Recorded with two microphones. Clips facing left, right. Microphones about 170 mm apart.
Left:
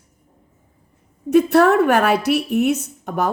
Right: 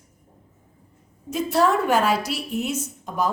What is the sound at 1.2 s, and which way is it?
A woman's voice, 65° left (ahead or behind).